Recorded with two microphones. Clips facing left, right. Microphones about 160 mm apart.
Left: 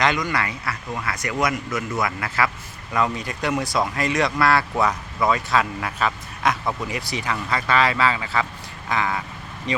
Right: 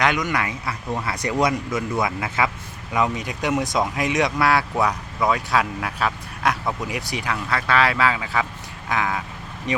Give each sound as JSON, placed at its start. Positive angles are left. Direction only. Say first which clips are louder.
{"t": 0.0, "sound": "a man's voice", "louder": "even", "side_deg": -10}